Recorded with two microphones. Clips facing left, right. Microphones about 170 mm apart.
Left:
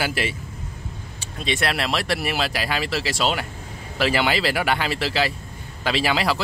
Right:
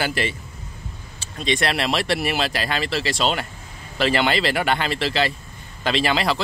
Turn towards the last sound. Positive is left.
turn(degrees=10)  # may be behind; listen again after turning